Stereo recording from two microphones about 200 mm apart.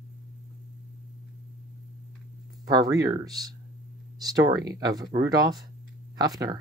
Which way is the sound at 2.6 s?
20° right (ahead or behind).